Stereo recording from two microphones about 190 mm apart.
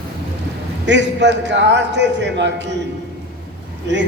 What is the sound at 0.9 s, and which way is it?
A man's voice, 70° right (ahead or behind).